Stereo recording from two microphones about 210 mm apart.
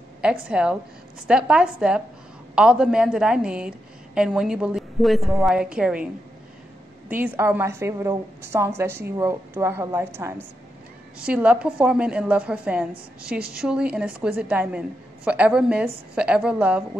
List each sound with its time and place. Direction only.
0.2 s a woman's voice: 5° right (ahead or behind)
7.1 s a woman's voice: 10° right (ahead or behind)